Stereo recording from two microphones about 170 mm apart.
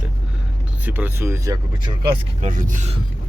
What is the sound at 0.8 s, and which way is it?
Speech, 10° right (ahead or behind).